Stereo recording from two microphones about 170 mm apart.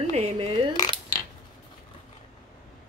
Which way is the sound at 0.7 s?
25° left (ahead or behind).